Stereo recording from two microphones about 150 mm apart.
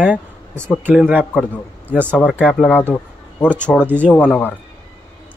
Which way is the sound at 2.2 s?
5° right (ahead or behind).